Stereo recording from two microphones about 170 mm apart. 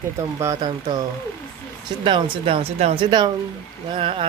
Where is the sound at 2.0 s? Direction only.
30° right (ahead or behind).